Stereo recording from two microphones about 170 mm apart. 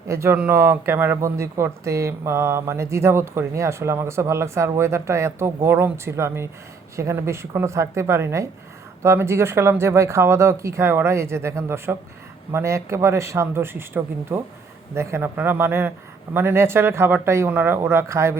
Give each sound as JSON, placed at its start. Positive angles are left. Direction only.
{"t": 0.1, "sound": "speech", "side_deg": -15}